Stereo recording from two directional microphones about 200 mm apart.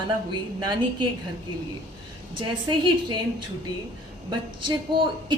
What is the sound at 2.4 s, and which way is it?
Speech, 25° right (ahead or behind).